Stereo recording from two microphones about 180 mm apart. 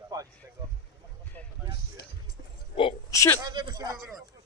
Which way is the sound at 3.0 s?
15° left (ahead or behind).